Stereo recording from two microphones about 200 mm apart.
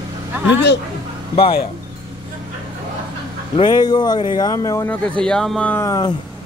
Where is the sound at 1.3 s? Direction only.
30° left (ahead or behind).